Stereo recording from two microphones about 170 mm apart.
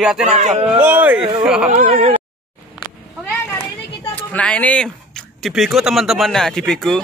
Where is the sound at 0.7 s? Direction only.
10° right (ahead or behind).